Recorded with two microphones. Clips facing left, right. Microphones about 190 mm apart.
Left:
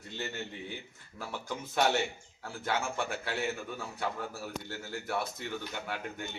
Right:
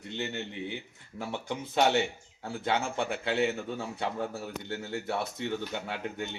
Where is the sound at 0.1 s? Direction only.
20° right (ahead or behind).